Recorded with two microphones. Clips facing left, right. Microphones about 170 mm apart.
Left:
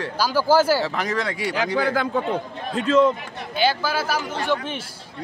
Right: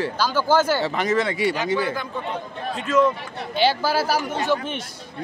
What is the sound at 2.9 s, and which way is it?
Speech, 30° left (ahead or behind).